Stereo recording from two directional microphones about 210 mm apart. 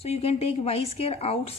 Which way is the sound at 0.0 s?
30° left (ahead or behind).